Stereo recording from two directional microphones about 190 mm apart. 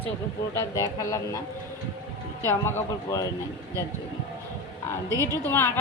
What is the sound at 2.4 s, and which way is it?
Speech, 10° left (ahead or behind).